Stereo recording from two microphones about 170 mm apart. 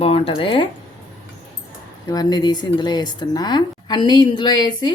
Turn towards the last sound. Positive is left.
turn(degrees=25)  # may be behind; listen again after turning